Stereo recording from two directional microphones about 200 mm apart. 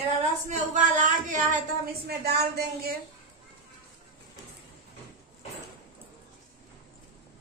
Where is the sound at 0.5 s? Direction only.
40° right (ahead or behind).